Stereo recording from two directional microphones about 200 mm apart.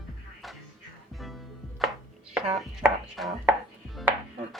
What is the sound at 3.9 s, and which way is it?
Chopping, centre (ahead or behind).